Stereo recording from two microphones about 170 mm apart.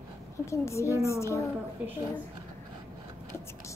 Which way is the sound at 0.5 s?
15° left (ahead or behind).